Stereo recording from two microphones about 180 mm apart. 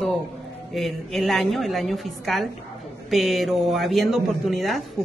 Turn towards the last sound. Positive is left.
turn(degrees=0)  # may be behind; listen again after turning